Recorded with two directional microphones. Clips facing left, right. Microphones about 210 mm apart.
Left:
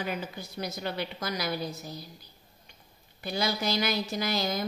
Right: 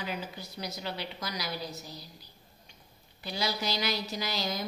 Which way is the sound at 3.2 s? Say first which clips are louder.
Left 3 dB; 55° left (ahead or behind).